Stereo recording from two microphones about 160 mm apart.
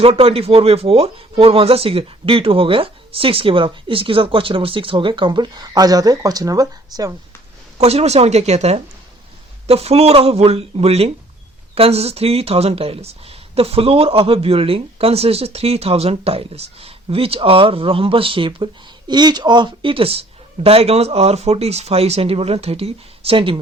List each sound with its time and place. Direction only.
0.0 s speech: 35° right (ahead or behind)
7.8 s speech: 40° right (ahead or behind)